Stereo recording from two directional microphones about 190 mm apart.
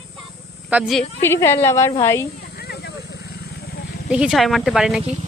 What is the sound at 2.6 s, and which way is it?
Vehicle, 60° left (ahead or behind).